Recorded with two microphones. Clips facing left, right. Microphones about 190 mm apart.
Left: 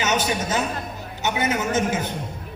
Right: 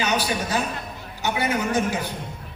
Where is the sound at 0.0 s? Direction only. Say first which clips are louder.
Left 1 dB; 20° left (ahead or behind).